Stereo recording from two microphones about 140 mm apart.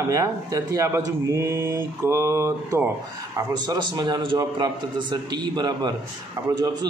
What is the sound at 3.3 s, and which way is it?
A man's voice, 30° right (ahead or behind).